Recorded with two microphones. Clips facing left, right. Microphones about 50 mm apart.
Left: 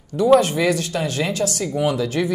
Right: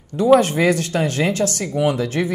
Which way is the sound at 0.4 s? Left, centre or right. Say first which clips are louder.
Right 2 dB; right.